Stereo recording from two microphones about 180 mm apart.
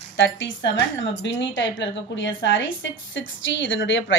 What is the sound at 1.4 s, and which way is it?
A woman's voice, 90° left.